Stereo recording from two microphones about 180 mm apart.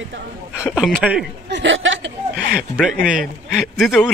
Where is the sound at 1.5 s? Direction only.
85° right.